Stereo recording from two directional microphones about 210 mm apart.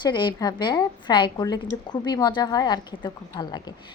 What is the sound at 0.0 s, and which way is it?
A woman's voice, 20° left (ahead or behind).